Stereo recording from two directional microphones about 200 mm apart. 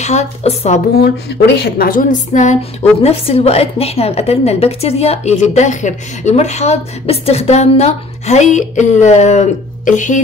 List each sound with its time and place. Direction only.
0.0 s a woman's voice: 35° left (ahead or behind)
1.6 s a woman's voice: 45° left (ahead or behind)